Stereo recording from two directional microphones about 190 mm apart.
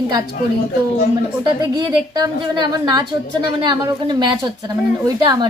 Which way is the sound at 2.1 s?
20° right (ahead or behind).